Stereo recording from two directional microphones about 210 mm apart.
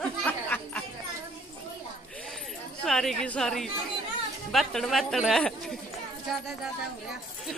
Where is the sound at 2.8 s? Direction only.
Centre (ahead or behind).